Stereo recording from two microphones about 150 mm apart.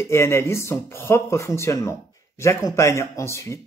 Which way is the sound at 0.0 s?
15° left (ahead or behind).